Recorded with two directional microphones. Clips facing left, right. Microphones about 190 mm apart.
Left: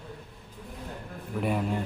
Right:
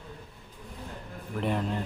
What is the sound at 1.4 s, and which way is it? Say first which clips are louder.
Speech: left 1 dB; 5° left (ahead or behind).